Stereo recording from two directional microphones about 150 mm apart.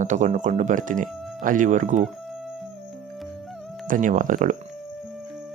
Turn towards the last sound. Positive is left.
turn(degrees=-60)  # may be behind; listen again after turning